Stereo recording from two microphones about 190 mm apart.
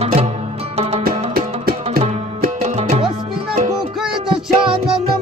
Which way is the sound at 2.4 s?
40° right (ahead or behind).